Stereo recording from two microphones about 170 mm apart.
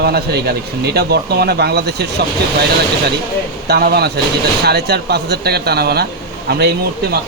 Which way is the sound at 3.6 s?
75° right (ahead or behind).